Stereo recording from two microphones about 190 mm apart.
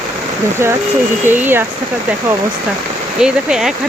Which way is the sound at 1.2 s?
10° right (ahead or behind).